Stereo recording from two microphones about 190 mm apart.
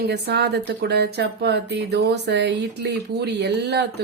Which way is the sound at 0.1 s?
60° right (ahead or behind).